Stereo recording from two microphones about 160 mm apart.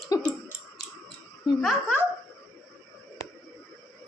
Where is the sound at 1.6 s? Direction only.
Centre (ahead or behind).